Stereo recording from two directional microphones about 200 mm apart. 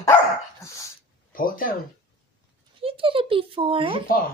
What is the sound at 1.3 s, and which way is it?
Speech, 45° left (ahead or behind).